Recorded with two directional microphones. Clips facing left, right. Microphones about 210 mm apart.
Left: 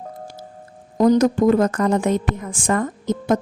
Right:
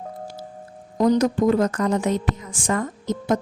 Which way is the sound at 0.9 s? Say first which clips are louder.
Left 3 dB; 50° left (ahead or behind).